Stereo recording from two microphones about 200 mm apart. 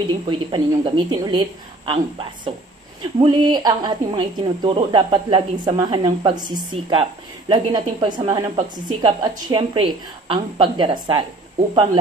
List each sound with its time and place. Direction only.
0.3 s a woman's voice: 25° right (ahead or behind)